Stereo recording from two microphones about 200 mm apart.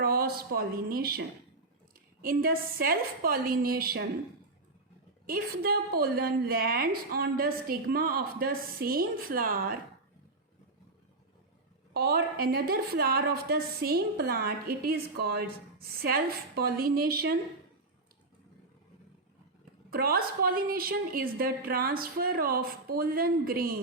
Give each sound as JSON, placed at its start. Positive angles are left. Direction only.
{"t": 0.0, "sound": "a woman's voice", "side_deg": -50}
{"t": 2.2, "sound": "a woman's voice", "side_deg": -45}
{"t": 5.2, "sound": "a woman's voice", "side_deg": -50}
{"t": 11.9, "sound": "a woman's voice", "side_deg": -50}
{"t": 19.9, "sound": "a woman's voice", "side_deg": -50}